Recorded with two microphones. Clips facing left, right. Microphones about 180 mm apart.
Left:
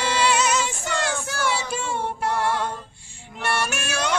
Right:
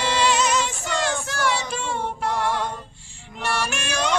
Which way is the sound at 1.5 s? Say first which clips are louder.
Even; 5° left (ahead or behind).